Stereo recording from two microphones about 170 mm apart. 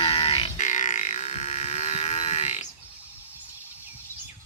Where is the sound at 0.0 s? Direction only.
30° left (ahead or behind).